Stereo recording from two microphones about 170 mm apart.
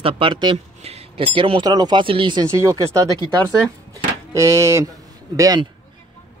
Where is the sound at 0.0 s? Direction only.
30° right (ahead or behind).